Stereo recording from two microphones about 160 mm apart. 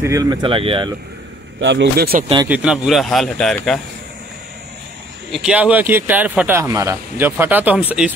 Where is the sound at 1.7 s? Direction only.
85° right.